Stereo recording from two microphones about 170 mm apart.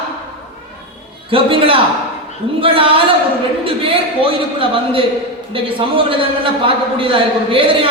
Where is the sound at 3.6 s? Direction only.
30° right (ahead or behind).